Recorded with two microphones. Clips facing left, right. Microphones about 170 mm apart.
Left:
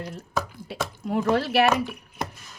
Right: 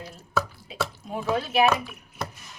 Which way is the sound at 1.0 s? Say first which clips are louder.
Left 6 dB; 75° left (ahead or behind).